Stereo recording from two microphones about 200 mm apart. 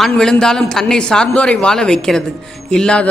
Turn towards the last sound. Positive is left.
turn(degrees=5)  # may be behind; listen again after turning